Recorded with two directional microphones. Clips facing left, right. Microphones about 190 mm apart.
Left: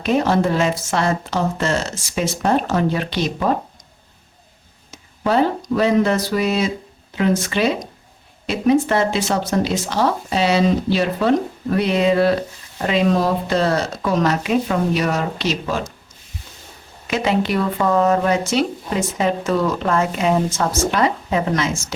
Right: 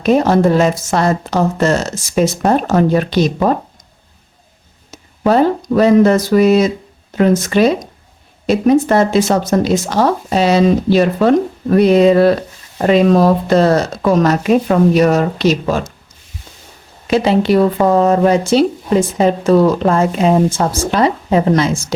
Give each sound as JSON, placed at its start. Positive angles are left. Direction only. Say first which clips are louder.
{"t": 0.0, "sound": "speech", "louder": "right 6 dB", "side_deg": -40}
{"t": 4.9, "sound": "speech", "louder": "right 6 dB", "side_deg": -45}
{"t": 17.1, "sound": "speech", "louder": "right 7 dB", "side_deg": -35}